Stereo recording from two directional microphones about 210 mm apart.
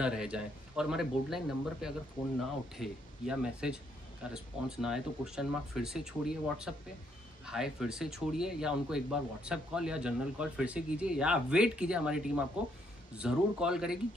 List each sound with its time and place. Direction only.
0.0 s speech: 5° right (ahead or behind)